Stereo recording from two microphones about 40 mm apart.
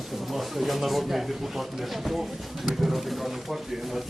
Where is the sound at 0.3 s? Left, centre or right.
Centre.